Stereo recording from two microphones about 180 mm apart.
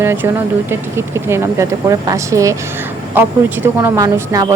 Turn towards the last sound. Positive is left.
turn(degrees=-20)  # may be behind; listen again after turning